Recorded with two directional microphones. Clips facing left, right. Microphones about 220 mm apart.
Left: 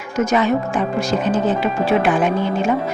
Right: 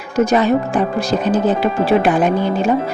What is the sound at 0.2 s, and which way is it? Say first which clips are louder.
Speech: right 3 dB; 35° right (ahead or behind).